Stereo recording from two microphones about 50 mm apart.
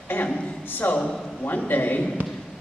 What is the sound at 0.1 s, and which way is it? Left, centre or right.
A man's voice, left.